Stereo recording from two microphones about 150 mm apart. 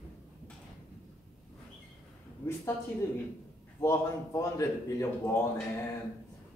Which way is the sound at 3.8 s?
20° left (ahead or behind).